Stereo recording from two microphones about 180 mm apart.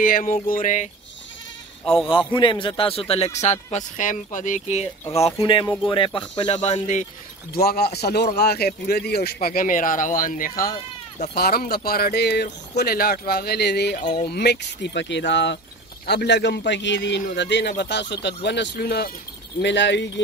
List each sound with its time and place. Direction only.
0.0 s a sound: 50° left (ahead or behind)
2.0 s a man's voice: 30° left (ahead or behind)
7.5 s a man's voice: 60° left (ahead or behind); by 15.6 s 80° left
16.1 s a man's voice: 70° left (ahead or behind)
19.6 s speech: 80° left